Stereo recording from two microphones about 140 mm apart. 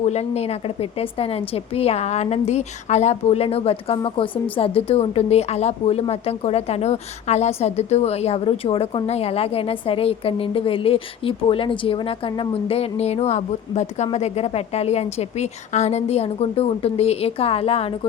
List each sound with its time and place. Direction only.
0.0 s a woman's voice: 50° left (ahead or behind)